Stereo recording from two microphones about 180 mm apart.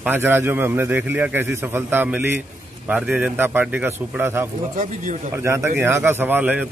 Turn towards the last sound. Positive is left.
turn(degrees=-10)  # may be behind; listen again after turning